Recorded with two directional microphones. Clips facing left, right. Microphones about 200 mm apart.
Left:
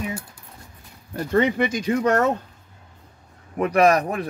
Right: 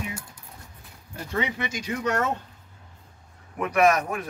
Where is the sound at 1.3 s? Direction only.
55° left (ahead or behind).